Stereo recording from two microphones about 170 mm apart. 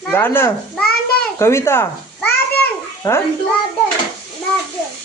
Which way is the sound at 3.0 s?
25° left (ahead or behind).